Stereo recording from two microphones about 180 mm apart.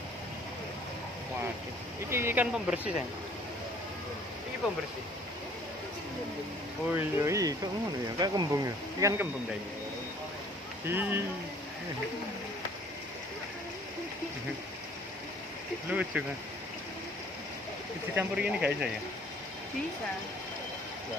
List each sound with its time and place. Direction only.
2.0 s speech: 15° right (ahead or behind)
6.9 s speech: 15° right (ahead or behind)
10.9 s speech: 10° right (ahead or behind)
15.9 s speech: 5° right (ahead or behind)
18.1 s speech: 5° right (ahead or behind)